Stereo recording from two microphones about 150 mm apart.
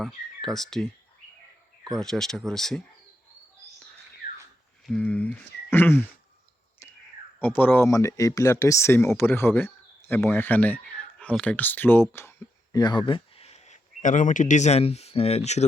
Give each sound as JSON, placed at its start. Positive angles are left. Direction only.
{"t": 0.0, "sound": "speech", "side_deg": 0}
{"t": 1.9, "sound": "speech", "side_deg": 5}
{"t": 4.9, "sound": "speech", "side_deg": 5}
{"t": 7.3, "sound": "speech", "side_deg": 15}
{"t": 12.7, "sound": "speech", "side_deg": 30}